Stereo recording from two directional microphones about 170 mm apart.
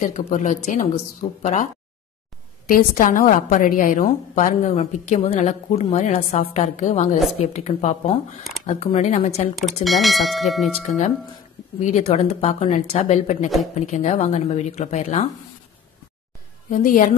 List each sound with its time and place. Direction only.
0.0 s a woman's voice: 50° left (ahead or behind)
2.7 s a woman's voice: 55° left (ahead or behind)
9.8 s speech: centre (ahead or behind)
11.8 s speech: 40° left (ahead or behind)
16.7 s a woman's voice: 50° left (ahead or behind)